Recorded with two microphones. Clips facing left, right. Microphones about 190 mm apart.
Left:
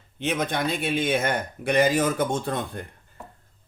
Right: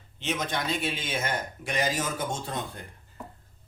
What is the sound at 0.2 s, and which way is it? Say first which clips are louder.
Speech: left 5 dB; 55° left (ahead or behind).